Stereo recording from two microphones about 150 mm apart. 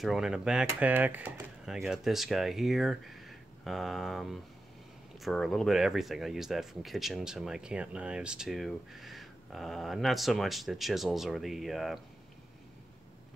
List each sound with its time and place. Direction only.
0.0 s speech: centre (ahead or behind)